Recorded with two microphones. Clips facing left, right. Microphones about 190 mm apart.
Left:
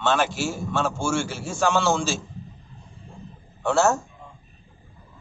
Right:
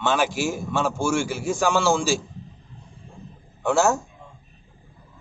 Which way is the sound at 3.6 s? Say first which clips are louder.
Even; 15° right (ahead or behind).